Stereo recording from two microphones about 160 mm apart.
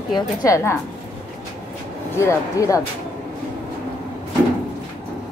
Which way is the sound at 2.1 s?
20° left (ahead or behind).